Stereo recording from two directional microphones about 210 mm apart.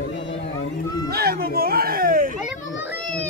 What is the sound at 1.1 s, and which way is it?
Speech, 45° right (ahead or behind).